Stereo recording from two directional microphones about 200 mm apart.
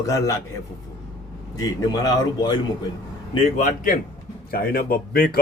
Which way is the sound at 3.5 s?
40° left (ahead or behind).